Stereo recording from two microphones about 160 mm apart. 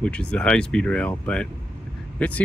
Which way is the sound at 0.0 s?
5° left (ahead or behind).